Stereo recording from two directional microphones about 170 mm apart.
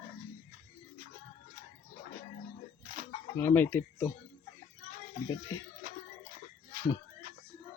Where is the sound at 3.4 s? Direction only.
15° left (ahead or behind).